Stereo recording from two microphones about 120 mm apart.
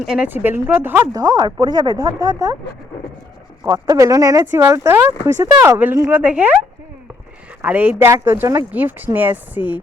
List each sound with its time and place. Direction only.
0.0 s speech: 5° right (ahead or behind)
0.3 s speech: 20° right (ahead or behind)
1.1 s speech: 35° right (ahead or behind)
3.7 s speech: 30° right (ahead or behind); by 6.5 s 10° right (ahead or behind)
7.6 s speech: 15° right (ahead or behind)